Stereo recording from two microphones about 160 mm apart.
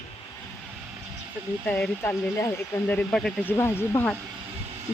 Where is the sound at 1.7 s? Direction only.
10° left (ahead or behind).